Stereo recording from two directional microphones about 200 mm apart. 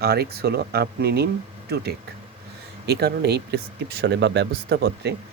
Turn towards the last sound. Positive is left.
turn(degrees=-55)  # may be behind; listen again after turning